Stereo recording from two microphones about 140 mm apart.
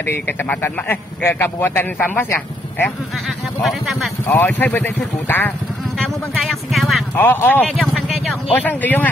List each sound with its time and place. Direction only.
0.0 s a man's voice: 15° left (ahead or behind)
3.3 s speech: centre (ahead or behind)
4.3 s a man's voice: 15° left (ahead or behind)
5.9 s speech: centre (ahead or behind)
7.2 s a man's voice: 15° left (ahead or behind)